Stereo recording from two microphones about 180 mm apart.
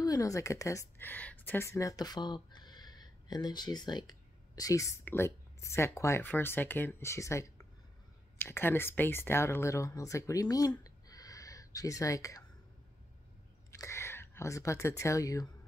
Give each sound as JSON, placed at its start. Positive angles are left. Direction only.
{"t": 0.0, "sound": "speech", "side_deg": 20}
{"t": 10.8, "sound": "a sound", "side_deg": 20}
{"t": 13.7, "sound": "speech", "side_deg": 15}